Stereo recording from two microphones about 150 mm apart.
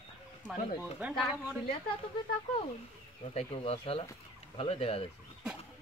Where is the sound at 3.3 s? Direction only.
40° left (ahead or behind).